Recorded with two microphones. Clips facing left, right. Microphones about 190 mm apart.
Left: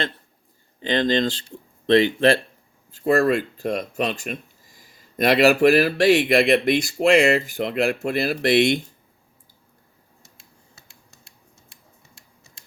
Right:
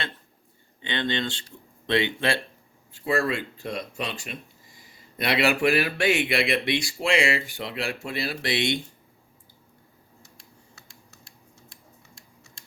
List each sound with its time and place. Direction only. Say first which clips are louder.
0.8 s speech: left 8 dB; 40° left (ahead or behind)
8.0 s speech: left 8 dB; 60° left (ahead or behind)